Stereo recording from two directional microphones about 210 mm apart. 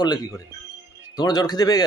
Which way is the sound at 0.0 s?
20° left (ahead or behind).